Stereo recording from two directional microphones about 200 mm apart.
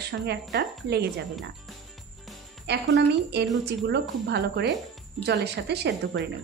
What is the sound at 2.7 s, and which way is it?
Speech, 60° right (ahead or behind).